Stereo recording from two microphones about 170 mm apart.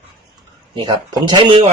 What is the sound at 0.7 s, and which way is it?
Speech, 25° right (ahead or behind).